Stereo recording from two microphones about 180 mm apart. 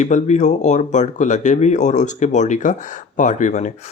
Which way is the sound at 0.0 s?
40° left (ahead or behind).